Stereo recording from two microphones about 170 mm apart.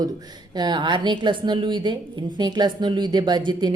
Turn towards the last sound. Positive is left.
turn(degrees=-25)  # may be behind; listen again after turning